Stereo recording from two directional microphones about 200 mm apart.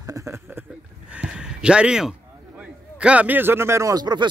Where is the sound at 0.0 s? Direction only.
15° right (ahead or behind).